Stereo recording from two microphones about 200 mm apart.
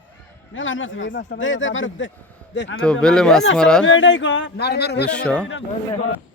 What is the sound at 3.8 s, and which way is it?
Speech, 65° left (ahead or behind).